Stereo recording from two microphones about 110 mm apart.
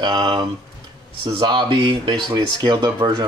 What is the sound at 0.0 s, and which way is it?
Speech, 45° right (ahead or behind).